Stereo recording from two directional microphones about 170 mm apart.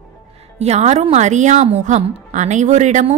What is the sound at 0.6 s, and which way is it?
A woman's voice, 40° right (ahead or behind).